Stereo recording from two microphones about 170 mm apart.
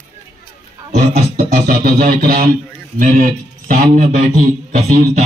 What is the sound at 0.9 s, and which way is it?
Speech, 50° right (ahead or behind).